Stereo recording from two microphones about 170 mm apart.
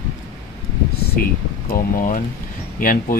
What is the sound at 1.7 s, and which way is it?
Speech, 50° left (ahead or behind).